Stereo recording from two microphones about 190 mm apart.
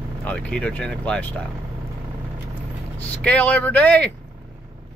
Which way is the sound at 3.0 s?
5° left (ahead or behind).